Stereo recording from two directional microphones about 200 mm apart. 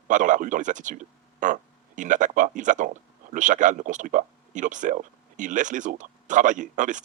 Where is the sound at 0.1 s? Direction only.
40° right (ahead or behind).